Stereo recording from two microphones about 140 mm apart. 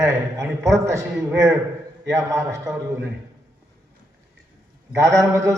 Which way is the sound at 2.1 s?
20° right (ahead or behind).